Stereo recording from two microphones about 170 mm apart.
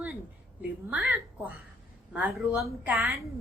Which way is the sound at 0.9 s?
10° right (ahead or behind).